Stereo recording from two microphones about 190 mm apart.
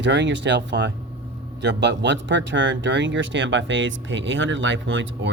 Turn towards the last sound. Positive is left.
turn(degrees=-75)  # may be behind; listen again after turning